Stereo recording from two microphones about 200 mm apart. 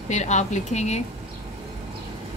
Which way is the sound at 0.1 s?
35° left (ahead or behind).